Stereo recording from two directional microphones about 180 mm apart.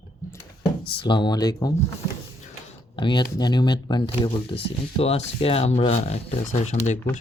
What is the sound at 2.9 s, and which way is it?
Speech, 25° left (ahead or behind).